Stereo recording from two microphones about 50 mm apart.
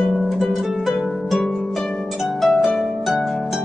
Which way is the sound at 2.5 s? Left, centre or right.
Left.